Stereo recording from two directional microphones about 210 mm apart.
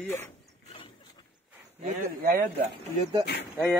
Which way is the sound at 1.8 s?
40° right (ahead or behind).